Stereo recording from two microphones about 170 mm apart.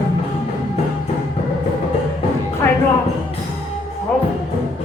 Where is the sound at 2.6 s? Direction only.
15° left (ahead or behind).